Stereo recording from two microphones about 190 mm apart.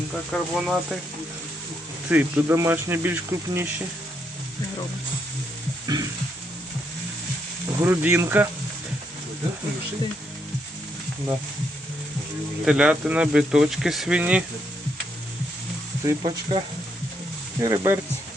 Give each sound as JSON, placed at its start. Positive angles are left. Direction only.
{"t": 0.3, "sound": "speech", "side_deg": -5}
{"t": 2.0, "sound": "speech", "side_deg": -5}
{"t": 5.9, "sound": "speech", "side_deg": -20}
{"t": 7.8, "sound": "speech", "side_deg": -10}
{"t": 12.6, "sound": "speech", "side_deg": -5}
{"t": 16.2, "sound": "speech", "side_deg": -30}
{"t": 17.6, "sound": "speech", "side_deg": -15}